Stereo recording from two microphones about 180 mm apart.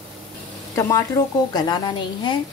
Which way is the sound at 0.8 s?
15° left (ahead or behind).